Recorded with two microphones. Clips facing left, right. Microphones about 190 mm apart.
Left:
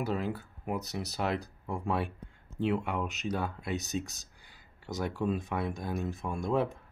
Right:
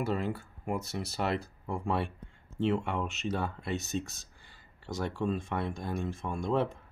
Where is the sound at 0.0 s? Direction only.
Centre (ahead or behind).